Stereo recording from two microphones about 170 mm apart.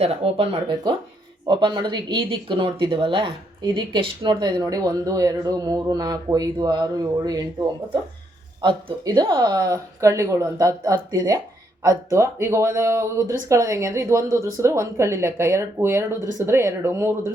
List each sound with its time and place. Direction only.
0.0 s speech: 35° right (ahead or behind)
8.6 s speech: 25° right (ahead or behind)